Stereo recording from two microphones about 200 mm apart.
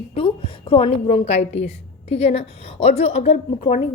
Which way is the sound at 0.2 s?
25° left (ahead or behind).